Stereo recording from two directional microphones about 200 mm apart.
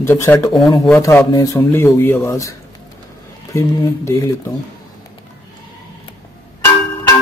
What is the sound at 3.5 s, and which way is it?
Speech, 15° left (ahead or behind).